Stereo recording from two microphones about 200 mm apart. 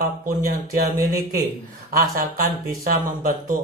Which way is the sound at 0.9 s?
15° right (ahead or behind).